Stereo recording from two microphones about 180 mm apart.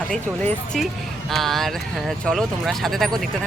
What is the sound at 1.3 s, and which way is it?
Speech, centre (ahead or behind).